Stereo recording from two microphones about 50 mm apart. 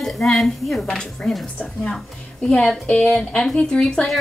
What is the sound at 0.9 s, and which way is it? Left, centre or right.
A woman's voice, centre.